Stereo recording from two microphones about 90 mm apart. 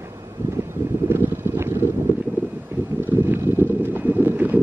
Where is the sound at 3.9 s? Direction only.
20° right (ahead or behind).